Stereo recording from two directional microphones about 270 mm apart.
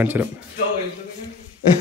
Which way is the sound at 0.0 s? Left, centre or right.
Centre.